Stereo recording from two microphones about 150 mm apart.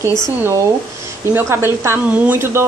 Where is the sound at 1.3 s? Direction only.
15° right (ahead or behind).